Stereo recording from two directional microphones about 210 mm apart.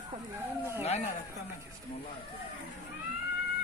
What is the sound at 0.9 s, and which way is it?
Speech, 35° left (ahead or behind).